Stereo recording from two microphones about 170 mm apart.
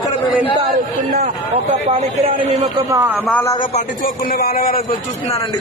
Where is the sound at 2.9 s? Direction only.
15° right (ahead or behind).